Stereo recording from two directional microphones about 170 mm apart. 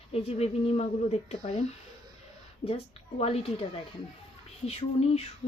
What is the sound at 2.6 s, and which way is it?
Speech, 35° left (ahead or behind).